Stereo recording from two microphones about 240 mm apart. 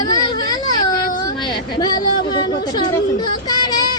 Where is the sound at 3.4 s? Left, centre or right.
Centre.